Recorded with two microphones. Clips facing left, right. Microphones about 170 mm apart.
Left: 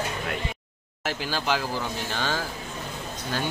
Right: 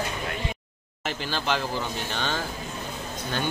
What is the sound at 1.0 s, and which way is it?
Speech, 5° left (ahead or behind).